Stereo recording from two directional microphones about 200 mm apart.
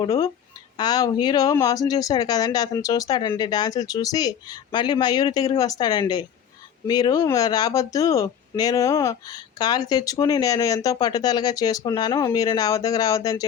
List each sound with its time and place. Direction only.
0.0 s speech: 20° left (ahead or behind)